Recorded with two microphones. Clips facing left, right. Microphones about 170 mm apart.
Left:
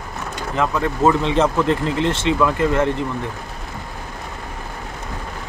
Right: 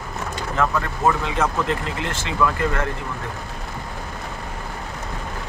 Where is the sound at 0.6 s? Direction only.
20° left (ahead or behind).